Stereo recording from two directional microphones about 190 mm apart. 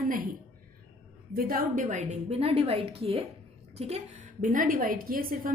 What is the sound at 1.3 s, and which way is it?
A woman's voice, 50° right (ahead or behind).